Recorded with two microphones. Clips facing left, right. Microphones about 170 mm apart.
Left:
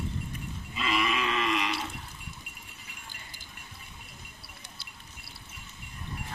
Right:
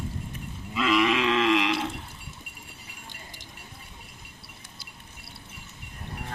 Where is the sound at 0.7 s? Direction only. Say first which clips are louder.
Right 7 dB; 75° right (ahead or behind).